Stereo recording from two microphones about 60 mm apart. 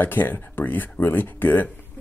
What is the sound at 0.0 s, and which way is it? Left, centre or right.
Speech, left.